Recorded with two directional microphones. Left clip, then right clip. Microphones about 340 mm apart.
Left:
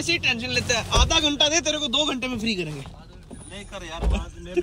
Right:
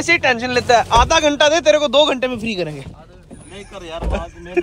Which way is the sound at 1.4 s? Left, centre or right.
Centre.